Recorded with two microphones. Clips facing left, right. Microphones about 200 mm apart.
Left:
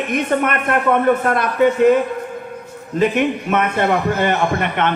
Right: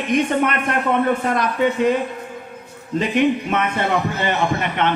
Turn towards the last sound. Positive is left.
turn(degrees=50)  # may be behind; listen again after turning